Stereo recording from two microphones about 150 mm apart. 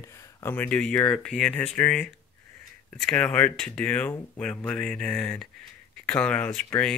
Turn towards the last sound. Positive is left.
turn(degrees=10)  # may be behind; listen again after turning